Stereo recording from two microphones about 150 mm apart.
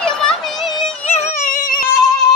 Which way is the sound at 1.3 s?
60° left (ahead or behind).